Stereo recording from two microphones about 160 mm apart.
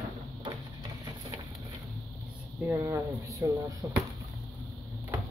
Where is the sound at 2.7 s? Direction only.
20° right (ahead or behind).